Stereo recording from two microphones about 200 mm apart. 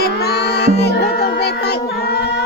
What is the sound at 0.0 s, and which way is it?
Music, 55° left (ahead or behind).